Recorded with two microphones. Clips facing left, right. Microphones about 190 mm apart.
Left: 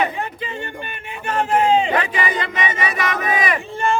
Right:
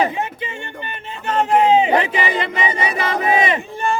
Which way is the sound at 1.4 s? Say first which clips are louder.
Right 2 dB; 20° right (ahead or behind).